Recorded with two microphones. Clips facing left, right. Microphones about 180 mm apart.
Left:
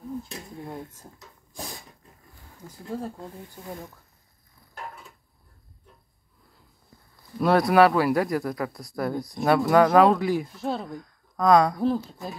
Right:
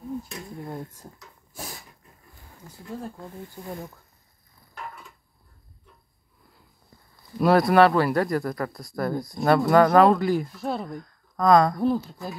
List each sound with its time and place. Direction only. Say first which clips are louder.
0.7 s a sound: right 2 dB; 5° right (ahead or behind)
2.8 s speech: left 3 dB; 30° left (ahead or behind)
7.3 s a man's voice: right 1 dB; 5° right (ahead or behind)
12.1 s speech: right 1 dB; 20° left (ahead or behind)